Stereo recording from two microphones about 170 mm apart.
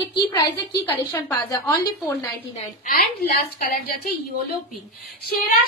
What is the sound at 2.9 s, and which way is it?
A woman's voice, 50° left (ahead or behind).